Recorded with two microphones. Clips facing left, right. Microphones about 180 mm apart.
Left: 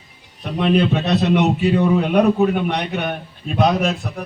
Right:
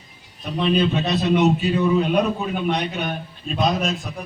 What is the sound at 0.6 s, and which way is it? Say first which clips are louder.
A man's voice: left 3 dB; 65° left (ahead or behind).